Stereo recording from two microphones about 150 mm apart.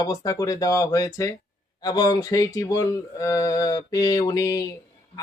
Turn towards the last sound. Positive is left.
turn(degrees=25)  # may be behind; listen again after turning